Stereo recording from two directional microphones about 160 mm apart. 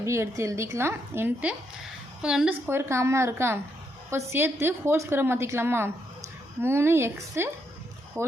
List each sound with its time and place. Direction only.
0.0 s a woman's voice: 20° right (ahead or behind)